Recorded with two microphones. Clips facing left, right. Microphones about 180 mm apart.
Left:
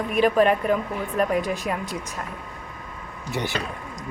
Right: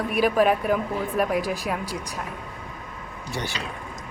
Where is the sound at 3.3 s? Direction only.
20° left (ahead or behind).